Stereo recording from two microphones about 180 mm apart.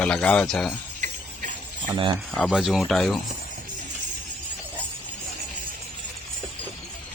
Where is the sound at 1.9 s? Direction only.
25° right (ahead or behind).